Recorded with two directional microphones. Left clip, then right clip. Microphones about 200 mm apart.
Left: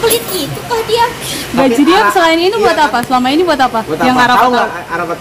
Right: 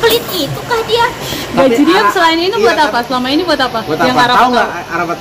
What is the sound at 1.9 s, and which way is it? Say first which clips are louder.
A woman's voice: left 1 dB; 45° left (ahead or behind).